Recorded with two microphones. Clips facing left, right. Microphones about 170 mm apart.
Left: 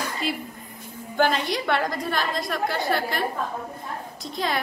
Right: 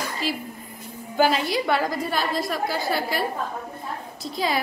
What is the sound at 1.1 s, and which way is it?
A woman's voice, 5° right (ahead or behind).